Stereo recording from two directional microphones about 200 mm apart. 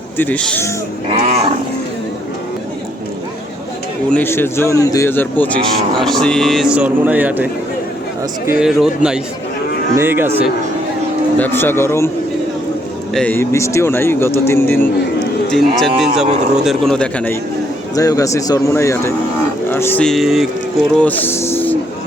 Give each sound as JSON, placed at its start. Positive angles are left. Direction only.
{"t": 0.2, "sound": "speech", "side_deg": 5}
{"t": 1.1, "sound": "roaring cats", "side_deg": -35}
{"t": 4.1, "sound": "speech", "side_deg": 10}
{"t": 8.6, "sound": "speech", "side_deg": -5}
{"t": 11.3, "sound": "speech", "side_deg": 10}
{"t": 13.1, "sound": "speech", "side_deg": 10}
{"t": 15.4, "sound": "speech", "side_deg": 0}
{"t": 16.2, "sound": "roaring cats", "side_deg": -35}
{"t": 16.6, "sound": "speech", "side_deg": 0}
{"t": 17.9, "sound": "speech", "side_deg": 15}